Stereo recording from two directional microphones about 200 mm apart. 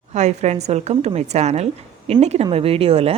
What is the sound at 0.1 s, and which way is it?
A woman's voice, 35° right (ahead or behind).